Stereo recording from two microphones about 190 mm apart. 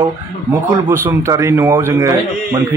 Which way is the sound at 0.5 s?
15° right (ahead or behind).